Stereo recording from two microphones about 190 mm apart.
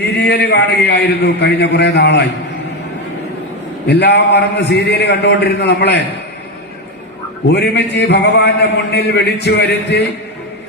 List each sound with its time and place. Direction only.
0.2 s a man's voice: 65° left (ahead or behind)
3.8 s a man's voice: 60° left (ahead or behind)
7.5 s a man's voice: 65° left (ahead or behind)